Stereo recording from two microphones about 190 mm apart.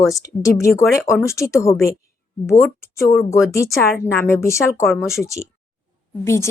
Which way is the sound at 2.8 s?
15° left (ahead or behind).